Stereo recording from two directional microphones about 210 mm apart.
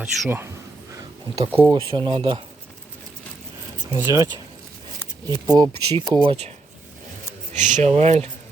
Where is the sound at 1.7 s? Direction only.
25° right (ahead or behind).